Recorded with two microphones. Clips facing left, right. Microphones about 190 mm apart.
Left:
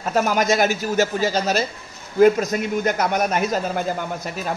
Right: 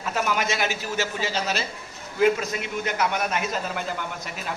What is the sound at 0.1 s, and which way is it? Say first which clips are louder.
A man's voice: left 7 dB; 40° left (ahead or behind).